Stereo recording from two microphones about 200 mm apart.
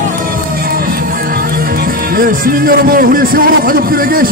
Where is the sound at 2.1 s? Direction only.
45° right (ahead or behind).